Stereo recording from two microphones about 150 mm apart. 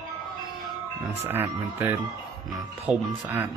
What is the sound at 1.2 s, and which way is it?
Speech, 15° right (ahead or behind).